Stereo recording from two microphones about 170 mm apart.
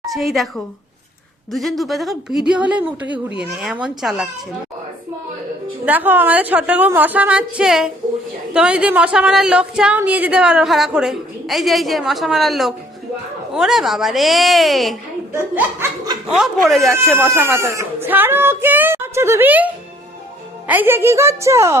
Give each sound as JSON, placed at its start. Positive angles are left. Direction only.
{"t": 0.1, "sound": "a woman's voice", "side_deg": 0}
{"t": 5.8, "sound": "a woman's voice", "side_deg": -10}
{"t": 15.3, "sound": "speech", "side_deg": -15}
{"t": 16.3, "sound": "a woman's voice", "side_deg": 0}
{"t": 17.3, "sound": "speech", "side_deg": -15}